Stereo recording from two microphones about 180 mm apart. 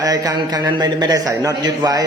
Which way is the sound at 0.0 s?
20° right (ahead or behind).